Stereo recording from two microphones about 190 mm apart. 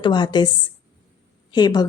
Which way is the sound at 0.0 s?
25° left (ahead or behind).